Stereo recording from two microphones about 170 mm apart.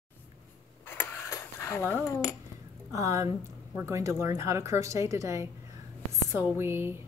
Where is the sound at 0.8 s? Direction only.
15° left (ahead or behind).